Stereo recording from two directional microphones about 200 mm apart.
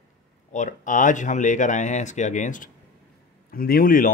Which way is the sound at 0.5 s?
40° left (ahead or behind).